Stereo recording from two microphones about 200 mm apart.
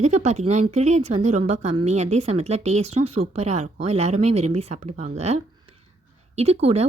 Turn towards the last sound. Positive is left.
turn(degrees=-30)  # may be behind; listen again after turning